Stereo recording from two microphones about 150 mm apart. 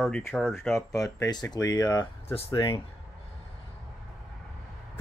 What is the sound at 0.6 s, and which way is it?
Speech, 15° left (ahead or behind).